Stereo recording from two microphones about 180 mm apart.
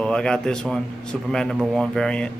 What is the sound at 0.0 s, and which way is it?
A man's voice, 5° left (ahead or behind).